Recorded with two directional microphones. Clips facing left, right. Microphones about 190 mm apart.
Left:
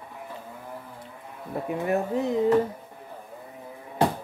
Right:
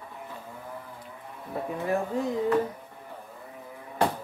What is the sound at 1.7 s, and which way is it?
Speech, 20° left (ahead or behind).